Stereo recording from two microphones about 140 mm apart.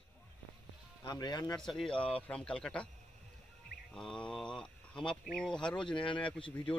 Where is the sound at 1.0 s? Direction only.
30° left (ahead or behind).